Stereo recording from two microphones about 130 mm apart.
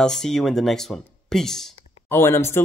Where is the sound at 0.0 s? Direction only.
5° left (ahead or behind).